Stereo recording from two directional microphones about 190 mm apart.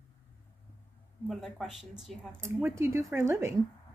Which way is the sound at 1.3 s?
Centre (ahead or behind).